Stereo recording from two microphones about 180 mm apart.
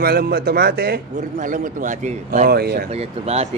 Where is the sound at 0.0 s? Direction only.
60° right (ahead or behind); by 2.5 s 45° right (ahead or behind).